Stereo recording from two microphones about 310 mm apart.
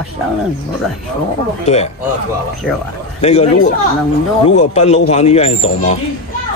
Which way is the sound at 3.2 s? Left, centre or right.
Left.